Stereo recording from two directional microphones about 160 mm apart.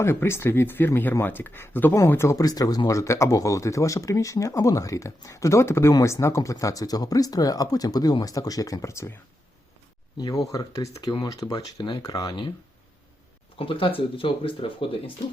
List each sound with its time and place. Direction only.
0.0 s speech: 15° left (ahead or behind)
10.2 s speech: 25° left (ahead or behind)
13.6 s speech: 35° left (ahead or behind)